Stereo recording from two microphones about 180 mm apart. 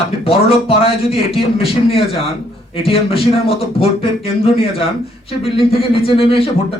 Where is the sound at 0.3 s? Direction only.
30° left (ahead or behind).